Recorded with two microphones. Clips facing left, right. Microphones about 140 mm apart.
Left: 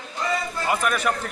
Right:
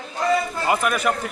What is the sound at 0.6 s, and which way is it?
Speech, 5° right (ahead or behind).